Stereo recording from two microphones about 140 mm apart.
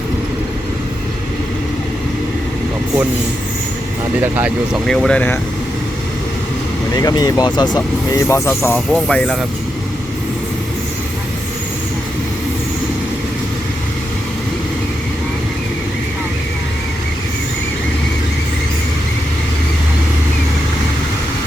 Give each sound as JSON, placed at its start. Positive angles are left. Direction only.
{"t": 4.2, "sound": "speech", "side_deg": -10}
{"t": 4.9, "sound": "speech", "side_deg": 5}
{"t": 6.9, "sound": "speech", "side_deg": 30}
{"t": 8.9, "sound": "speech", "side_deg": 5}